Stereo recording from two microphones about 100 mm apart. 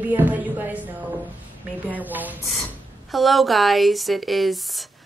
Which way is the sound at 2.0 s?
15° right (ahead or behind).